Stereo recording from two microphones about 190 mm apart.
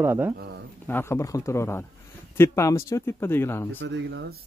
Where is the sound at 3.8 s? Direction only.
65° right (ahead or behind).